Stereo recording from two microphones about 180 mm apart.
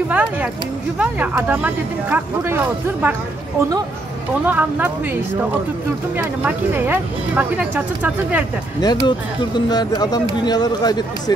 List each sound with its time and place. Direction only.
0.1 s speech: 10° right (ahead or behind)
4.5 s speech: 10° right (ahead or behind)
8.8 s speech: 20° left (ahead or behind)